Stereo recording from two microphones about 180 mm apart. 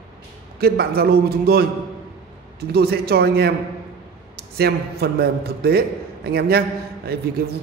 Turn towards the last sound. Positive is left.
turn(degrees=-60)  # may be behind; listen again after turning